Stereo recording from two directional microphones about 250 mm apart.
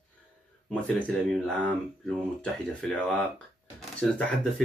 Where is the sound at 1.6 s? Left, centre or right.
Centre.